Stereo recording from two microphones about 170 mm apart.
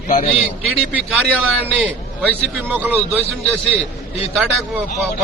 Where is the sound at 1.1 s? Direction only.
5° left (ahead or behind).